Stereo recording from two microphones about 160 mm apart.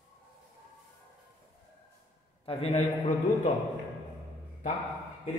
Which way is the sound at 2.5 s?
40° left (ahead or behind).